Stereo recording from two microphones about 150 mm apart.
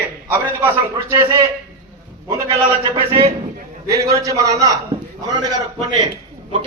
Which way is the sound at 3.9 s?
20° right (ahead or behind).